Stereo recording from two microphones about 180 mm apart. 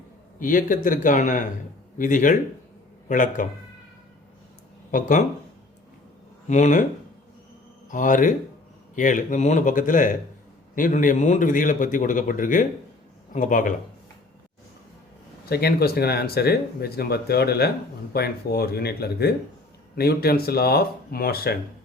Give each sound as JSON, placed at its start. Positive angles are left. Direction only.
{"t": 0.3, "sound": "a man's voice", "side_deg": 50}
{"t": 4.9, "sound": "a man's voice", "side_deg": 45}
{"t": 6.5, "sound": "a man's voice", "side_deg": 45}
{"t": 7.9, "sound": "a man's voice", "side_deg": 45}
{"t": 15.4, "sound": "speech", "side_deg": 60}